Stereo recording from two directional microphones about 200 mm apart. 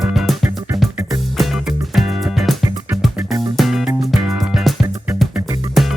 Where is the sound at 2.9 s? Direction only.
Centre (ahead or behind).